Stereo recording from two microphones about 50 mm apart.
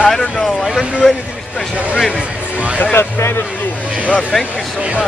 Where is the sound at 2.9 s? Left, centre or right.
Left.